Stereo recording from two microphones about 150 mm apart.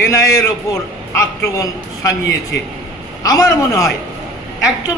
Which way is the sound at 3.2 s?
25° left (ahead or behind).